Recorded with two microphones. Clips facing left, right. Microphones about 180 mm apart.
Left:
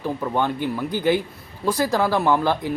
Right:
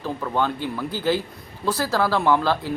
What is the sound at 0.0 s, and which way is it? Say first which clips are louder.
Speech: left 1 dB; 15° left (ahead or behind).